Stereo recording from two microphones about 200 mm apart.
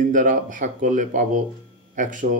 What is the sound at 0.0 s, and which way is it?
Speech, 40° right (ahead or behind).